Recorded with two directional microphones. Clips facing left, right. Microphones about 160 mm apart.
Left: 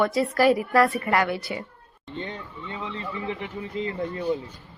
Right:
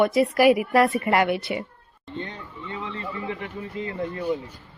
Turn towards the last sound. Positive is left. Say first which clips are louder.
# left 1 dB
turn(degrees=25)  # may be behind; listen again after turning